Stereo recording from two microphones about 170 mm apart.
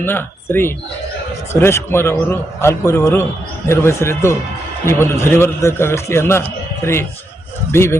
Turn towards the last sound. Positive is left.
turn(degrees=15)  # may be behind; listen again after turning